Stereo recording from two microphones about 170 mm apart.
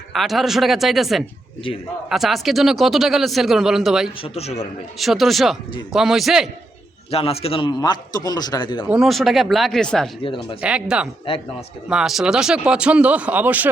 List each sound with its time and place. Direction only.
0.1 s a man's voice: centre (ahead or behind)
4.2 s a man's voice: 40° left (ahead or behind)
4.9 s a man's voice: centre (ahead or behind)
7.1 s a man's voice: 35° left (ahead or behind)
8.9 s a man's voice: centre (ahead or behind)
10.2 s a man's voice: 30° left (ahead or behind)
10.6 s a man's voice: 5° right (ahead or behind)